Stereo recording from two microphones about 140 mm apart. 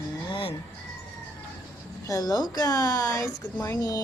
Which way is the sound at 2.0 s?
25° left (ahead or behind).